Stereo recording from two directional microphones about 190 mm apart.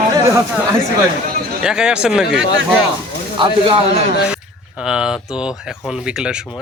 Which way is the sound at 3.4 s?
25° right (ahead or behind).